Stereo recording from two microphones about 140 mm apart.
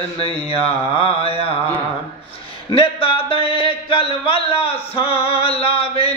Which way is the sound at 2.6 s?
40° left (ahead or behind).